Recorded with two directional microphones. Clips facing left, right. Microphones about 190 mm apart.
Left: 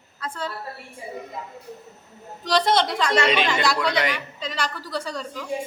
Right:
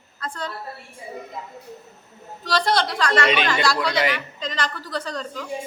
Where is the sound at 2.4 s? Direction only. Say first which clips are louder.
Left 1 dB; 20° left (ahead or behind).